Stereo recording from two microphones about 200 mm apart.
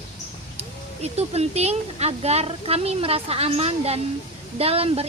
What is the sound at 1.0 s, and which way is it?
Speech, 30° right (ahead or behind).